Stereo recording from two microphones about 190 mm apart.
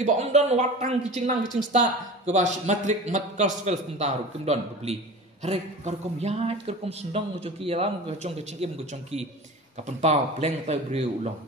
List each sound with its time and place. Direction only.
0.0 s a man's voice: 35° right (ahead or behind)
10.0 s a man's voice: 35° right (ahead or behind)